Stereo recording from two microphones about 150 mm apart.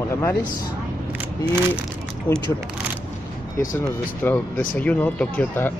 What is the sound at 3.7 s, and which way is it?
Speech, 15° left (ahead or behind).